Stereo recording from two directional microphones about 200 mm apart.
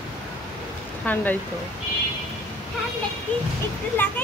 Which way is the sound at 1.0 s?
10° left (ahead or behind).